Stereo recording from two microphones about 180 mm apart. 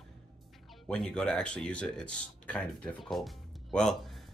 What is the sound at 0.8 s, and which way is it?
Speech, 5° left (ahead or behind).